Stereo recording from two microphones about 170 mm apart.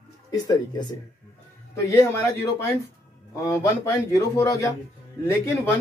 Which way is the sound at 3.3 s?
20° left (ahead or behind).